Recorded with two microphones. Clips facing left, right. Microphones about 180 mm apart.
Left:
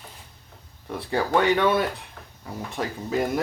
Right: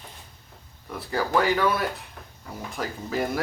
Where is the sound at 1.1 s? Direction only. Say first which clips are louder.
Left 2 dB; 25° left (ahead or behind).